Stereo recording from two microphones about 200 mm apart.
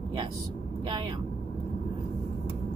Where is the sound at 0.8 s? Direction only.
25° right (ahead or behind).